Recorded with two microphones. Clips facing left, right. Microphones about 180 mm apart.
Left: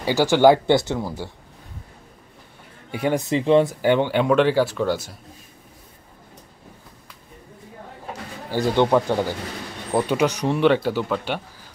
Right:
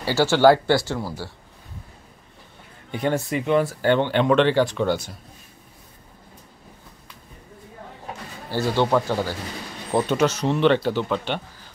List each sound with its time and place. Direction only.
0.0 s speech: 15° left (ahead or behind)
2.9 s speech: 10° left (ahead or behind)
3.3 s speech: 25° left (ahead or behind)
3.8 s speech: 10° left (ahead or behind)
8.5 s speech: 15° left (ahead or behind)